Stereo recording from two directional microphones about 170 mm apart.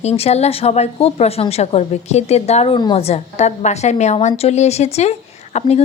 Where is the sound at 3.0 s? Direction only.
40° left (ahead or behind).